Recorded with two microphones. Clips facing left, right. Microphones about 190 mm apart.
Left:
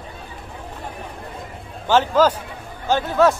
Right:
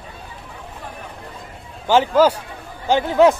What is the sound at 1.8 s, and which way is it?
A man's voice, 10° right (ahead or behind).